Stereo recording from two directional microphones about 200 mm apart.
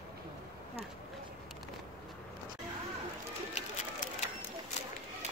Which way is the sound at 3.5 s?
40° left (ahead or behind).